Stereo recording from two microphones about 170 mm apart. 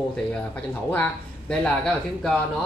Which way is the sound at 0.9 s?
5° left (ahead or behind).